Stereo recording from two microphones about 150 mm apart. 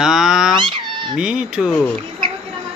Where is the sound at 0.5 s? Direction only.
35° right (ahead or behind).